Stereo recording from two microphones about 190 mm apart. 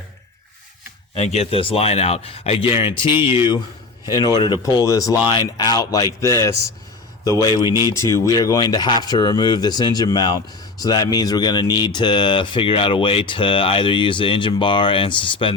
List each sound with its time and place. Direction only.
1.1 s speech: 35° left (ahead or behind)
3.1 s speech: 10° right (ahead or behind)
4.0 s a man's voice: 25° left (ahead or behind)